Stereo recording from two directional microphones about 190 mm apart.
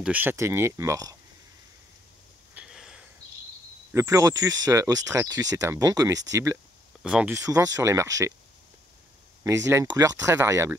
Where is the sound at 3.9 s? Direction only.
15° right (ahead or behind).